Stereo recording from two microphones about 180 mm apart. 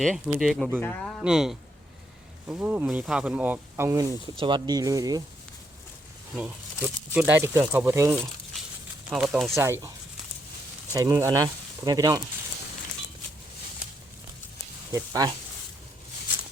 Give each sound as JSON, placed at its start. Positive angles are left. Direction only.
{"t": 0.0, "sound": "speech", "side_deg": 0}
{"t": 6.3, "sound": "speech", "side_deg": -10}
{"t": 10.9, "sound": "speech", "side_deg": -15}
{"t": 14.9, "sound": "speech", "side_deg": -20}